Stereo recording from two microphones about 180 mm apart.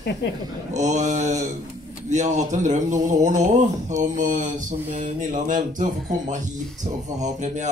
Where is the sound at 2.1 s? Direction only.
40° right (ahead or behind).